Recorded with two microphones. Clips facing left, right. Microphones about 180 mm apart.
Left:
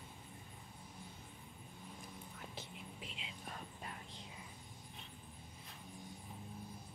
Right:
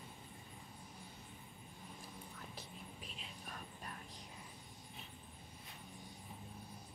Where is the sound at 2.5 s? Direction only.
25° left (ahead or behind).